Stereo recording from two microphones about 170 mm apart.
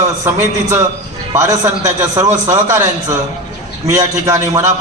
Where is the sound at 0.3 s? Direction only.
15° right (ahead or behind).